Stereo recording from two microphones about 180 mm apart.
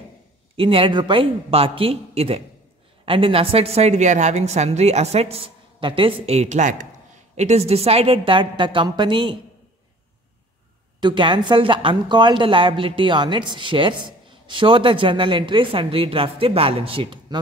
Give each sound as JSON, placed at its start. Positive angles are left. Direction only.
{"t": 0.6, "sound": "a woman's voice", "side_deg": -30}
{"t": 11.0, "sound": "a woman's voice", "side_deg": -25}